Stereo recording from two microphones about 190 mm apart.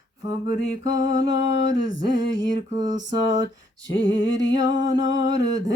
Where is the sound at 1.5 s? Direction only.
75° left (ahead or behind).